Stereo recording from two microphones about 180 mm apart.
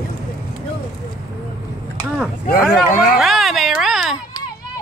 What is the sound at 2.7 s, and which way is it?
Speech, 55° left (ahead or behind).